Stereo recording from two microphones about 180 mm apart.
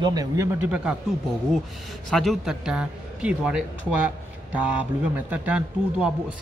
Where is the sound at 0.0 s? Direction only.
20° right (ahead or behind).